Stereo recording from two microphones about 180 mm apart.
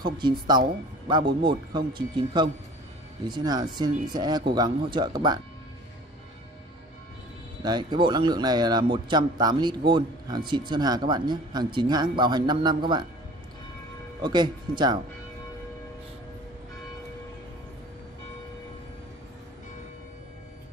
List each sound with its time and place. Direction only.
0.0 s speech: 25° right (ahead or behind)
7.6 s speech: 25° right (ahead or behind)
14.2 s speech: 25° right (ahead or behind)